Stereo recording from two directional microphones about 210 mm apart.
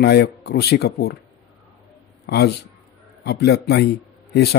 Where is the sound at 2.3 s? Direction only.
50° left (ahead or behind).